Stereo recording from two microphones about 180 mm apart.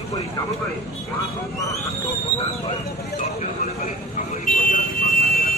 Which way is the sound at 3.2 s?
40° left (ahead or behind).